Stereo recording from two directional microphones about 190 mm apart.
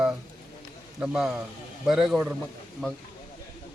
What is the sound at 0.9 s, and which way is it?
A man's voice, 5° right (ahead or behind).